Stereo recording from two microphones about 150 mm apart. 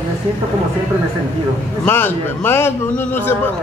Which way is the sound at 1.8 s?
15° left (ahead or behind).